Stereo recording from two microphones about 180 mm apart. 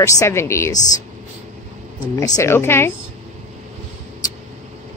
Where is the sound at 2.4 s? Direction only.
15° left (ahead or behind).